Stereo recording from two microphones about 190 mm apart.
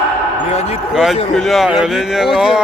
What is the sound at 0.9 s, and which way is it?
Speech, centre (ahead or behind).